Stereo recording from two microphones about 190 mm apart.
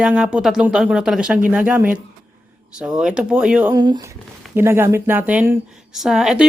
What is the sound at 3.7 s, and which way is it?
Speech, 20° right (ahead or behind).